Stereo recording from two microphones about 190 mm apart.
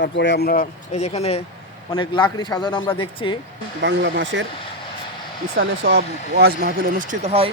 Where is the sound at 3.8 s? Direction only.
70° right (ahead or behind).